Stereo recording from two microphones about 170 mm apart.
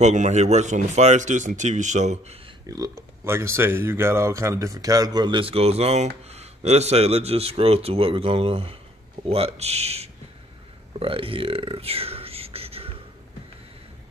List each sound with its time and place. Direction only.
0.0 s speech: 45° right (ahead or behind)
2.6 s a man's voice: 20° right (ahead or behind); by 10.0 s 40° right (ahead or behind)
10.9 s burping: 30° right (ahead or behind)